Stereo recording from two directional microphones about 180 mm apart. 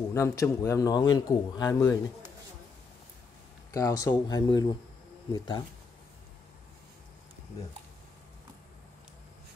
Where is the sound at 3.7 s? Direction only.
20° left (ahead or behind).